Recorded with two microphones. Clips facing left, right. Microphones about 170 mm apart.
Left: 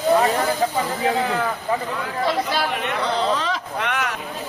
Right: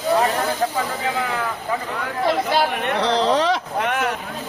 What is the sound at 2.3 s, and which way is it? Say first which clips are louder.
Speech: right 4 dB; 55° right (ahead or behind).